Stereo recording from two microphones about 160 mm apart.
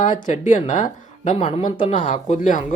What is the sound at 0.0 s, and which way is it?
A woman's voice, 50° left (ahead or behind).